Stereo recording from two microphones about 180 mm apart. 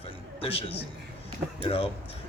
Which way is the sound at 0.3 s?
30° left (ahead or behind).